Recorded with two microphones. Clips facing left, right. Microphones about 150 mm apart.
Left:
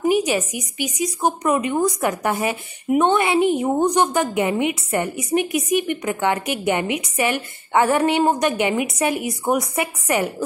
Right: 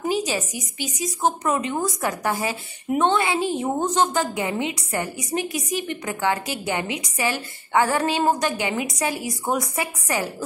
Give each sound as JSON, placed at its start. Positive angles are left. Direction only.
{"t": 0.1, "sound": "a woman's voice", "side_deg": 20}